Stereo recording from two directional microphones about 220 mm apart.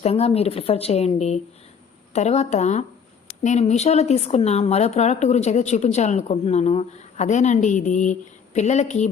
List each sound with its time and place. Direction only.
0.0 s a woman's voice: 25° left (ahead or behind)